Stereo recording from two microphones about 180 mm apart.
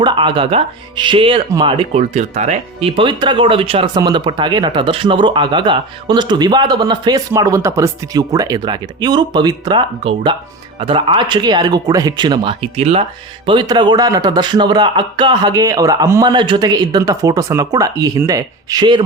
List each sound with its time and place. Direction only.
0.0 s speech: 25° right (ahead or behind)